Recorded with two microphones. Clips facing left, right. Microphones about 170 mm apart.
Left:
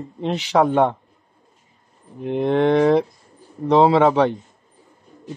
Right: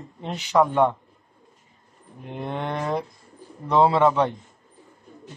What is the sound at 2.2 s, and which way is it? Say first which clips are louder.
Speech: left 12 dB; 90° left.